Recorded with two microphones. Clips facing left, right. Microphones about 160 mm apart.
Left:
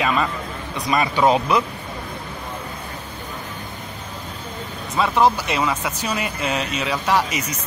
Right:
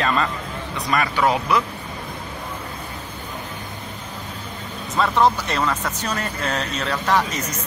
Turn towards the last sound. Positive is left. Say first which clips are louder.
# even
turn(degrees=5)  # may be behind; listen again after turning